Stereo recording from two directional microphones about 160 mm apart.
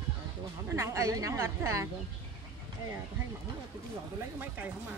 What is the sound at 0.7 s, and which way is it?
A woman's voice, 20° right (ahead or behind).